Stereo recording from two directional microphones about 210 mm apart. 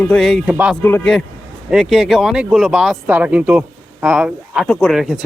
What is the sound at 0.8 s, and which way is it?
Speech, 10° left (ahead or behind).